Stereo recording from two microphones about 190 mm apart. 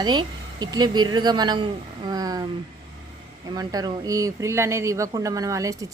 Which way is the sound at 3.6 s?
20° right (ahead or behind).